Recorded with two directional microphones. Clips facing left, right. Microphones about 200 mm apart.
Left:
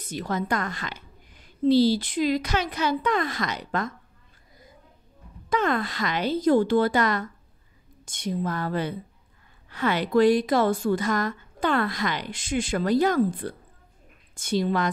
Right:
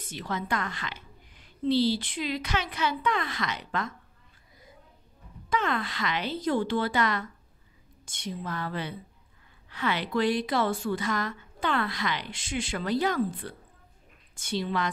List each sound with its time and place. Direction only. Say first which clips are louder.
0.0 s a woman's voice: left 5 dB; 40° left (ahead or behind)
5.5 s a woman's voice: left 4 dB; 40° left (ahead or behind)